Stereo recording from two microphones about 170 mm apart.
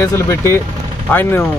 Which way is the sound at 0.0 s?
15° left (ahead or behind).